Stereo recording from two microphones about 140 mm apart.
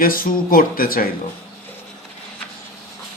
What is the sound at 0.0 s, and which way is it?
Speech, 90° left.